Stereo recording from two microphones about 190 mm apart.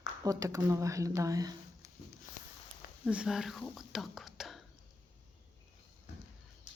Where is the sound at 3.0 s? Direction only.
5° right (ahead or behind).